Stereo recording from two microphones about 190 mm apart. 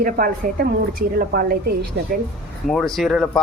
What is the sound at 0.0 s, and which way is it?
A woman's voice, 50° right (ahead or behind).